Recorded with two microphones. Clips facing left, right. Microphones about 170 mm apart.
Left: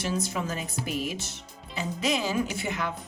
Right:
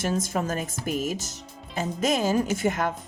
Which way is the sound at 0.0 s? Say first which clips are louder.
Right 3 dB; 45° right (ahead or behind).